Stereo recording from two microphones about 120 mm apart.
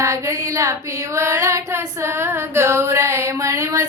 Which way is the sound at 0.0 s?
25° right (ahead or behind).